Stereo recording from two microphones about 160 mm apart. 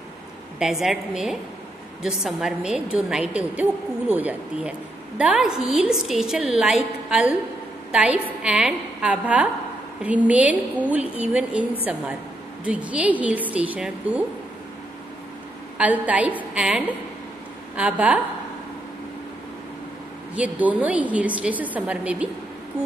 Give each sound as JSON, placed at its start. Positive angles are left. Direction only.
{"t": 0.6, "sound": "a woman's voice", "side_deg": -5}
{"t": 15.8, "sound": "a woman's voice", "side_deg": -10}
{"t": 20.3, "sound": "a woman's voice", "side_deg": -10}